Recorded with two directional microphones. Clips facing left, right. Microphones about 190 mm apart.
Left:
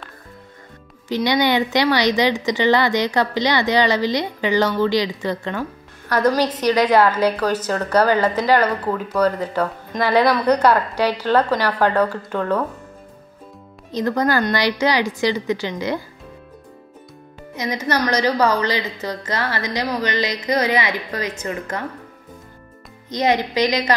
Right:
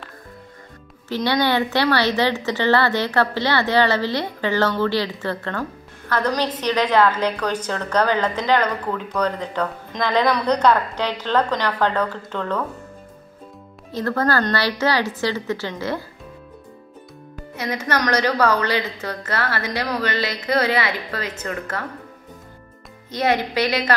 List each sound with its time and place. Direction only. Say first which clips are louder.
1.0 s a woman's voice: left 2 dB; 15° left (ahead or behind)
13.9 s a woman's voice: left 2 dB; 15° left (ahead or behind)
17.6 s a woman's voice: left 2 dB; 15° left (ahead or behind)
23.0 s a woman's voice: left 2 dB; 15° left (ahead or behind)